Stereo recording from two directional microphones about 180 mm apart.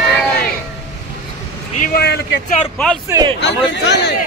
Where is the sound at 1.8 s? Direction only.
60° left (ahead or behind).